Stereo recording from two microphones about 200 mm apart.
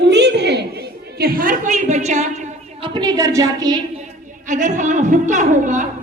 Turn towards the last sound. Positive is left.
turn(degrees=-40)  # may be behind; listen again after turning